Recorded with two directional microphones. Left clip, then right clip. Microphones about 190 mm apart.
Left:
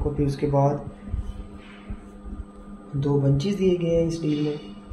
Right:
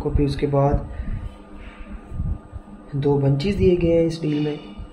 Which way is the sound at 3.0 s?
45° right (ahead or behind).